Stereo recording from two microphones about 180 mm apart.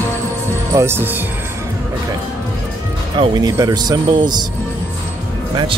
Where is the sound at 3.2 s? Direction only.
20° right (ahead or behind).